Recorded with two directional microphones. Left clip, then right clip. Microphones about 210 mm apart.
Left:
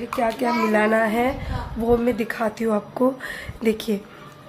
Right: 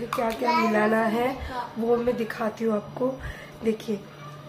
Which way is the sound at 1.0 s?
30° left (ahead or behind).